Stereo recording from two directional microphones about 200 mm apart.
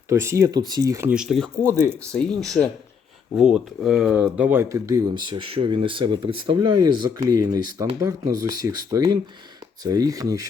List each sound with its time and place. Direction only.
0.1 s speech: 15° right (ahead or behind)
1.1 s speech: centre (ahead or behind)